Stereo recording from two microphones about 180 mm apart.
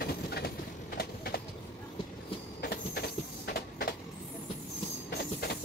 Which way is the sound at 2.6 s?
60° left (ahead or behind).